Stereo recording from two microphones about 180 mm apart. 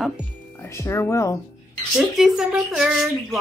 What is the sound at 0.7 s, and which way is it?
Speech, 15° left (ahead or behind).